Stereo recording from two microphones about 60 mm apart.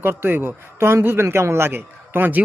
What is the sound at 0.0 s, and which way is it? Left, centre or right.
Speech, right.